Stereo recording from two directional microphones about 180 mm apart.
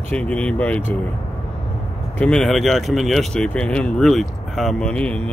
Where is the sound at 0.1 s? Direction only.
5° left (ahead or behind).